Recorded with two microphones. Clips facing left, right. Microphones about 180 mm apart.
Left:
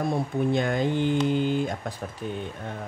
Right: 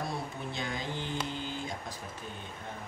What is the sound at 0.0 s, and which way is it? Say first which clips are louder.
Speech: left 11 dB; 55° left (ahead or behind).